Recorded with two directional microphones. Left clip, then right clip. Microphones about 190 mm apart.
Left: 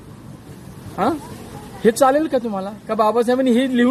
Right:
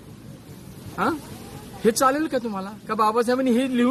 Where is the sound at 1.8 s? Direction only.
25° right (ahead or behind).